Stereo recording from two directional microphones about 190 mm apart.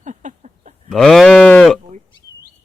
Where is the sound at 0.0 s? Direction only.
40° right (ahead or behind).